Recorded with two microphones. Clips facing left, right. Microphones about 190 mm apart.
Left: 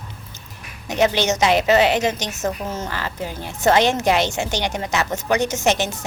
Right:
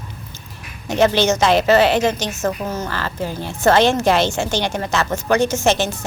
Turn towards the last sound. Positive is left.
turn(degrees=15)  # may be behind; listen again after turning